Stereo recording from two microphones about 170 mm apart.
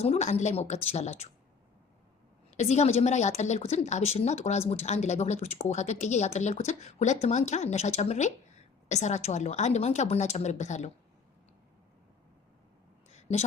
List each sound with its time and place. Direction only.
0.0 s speech: 40° left (ahead or behind)
2.6 s speech: 40° left (ahead or behind)
13.1 s a sound: 40° left (ahead or behind)